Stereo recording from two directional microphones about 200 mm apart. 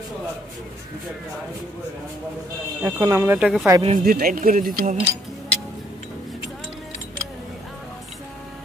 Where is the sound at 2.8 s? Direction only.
15° right (ahead or behind).